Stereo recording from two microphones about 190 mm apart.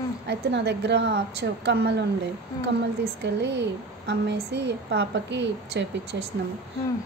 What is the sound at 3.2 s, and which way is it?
A woman's voice, 65° right (ahead or behind).